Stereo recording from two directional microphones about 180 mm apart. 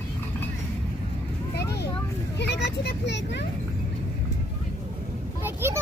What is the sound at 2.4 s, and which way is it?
Vehicle, 75° left (ahead or behind).